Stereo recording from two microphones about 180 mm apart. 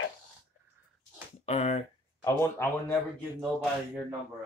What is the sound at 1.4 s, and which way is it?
Speech, 40° left (ahead or behind).